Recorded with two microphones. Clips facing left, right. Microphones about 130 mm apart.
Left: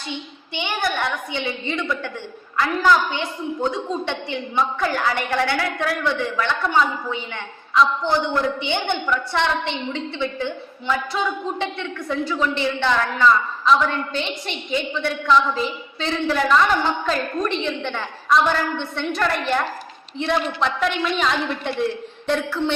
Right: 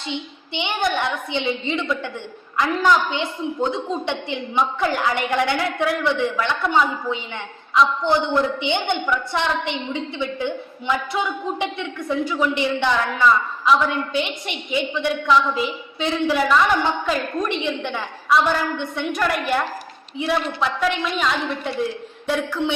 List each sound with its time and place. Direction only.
0.1 s a woman's voice: 20° right (ahead or behind); by 21.7 s centre (ahead or behind)
22.3 s a woman's voice: 10° right (ahead or behind)